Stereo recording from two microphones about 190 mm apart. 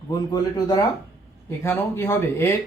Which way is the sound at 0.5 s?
20° left (ahead or behind).